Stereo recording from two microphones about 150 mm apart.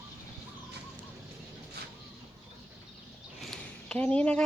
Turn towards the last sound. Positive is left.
turn(degrees=10)  # may be behind; listen again after turning